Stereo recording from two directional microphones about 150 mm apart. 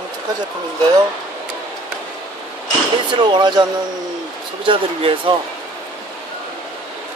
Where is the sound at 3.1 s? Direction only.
30° right (ahead or behind).